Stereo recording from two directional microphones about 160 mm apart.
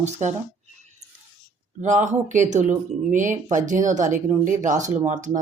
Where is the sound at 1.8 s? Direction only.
50° right (ahead or behind).